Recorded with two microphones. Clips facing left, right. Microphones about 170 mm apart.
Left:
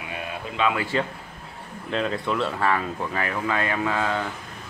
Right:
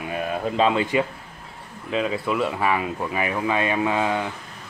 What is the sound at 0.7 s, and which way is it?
Speech, 25° right (ahead or behind).